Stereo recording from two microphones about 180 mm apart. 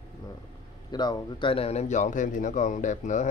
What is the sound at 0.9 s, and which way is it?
A man's voice, 25° left (ahead or behind).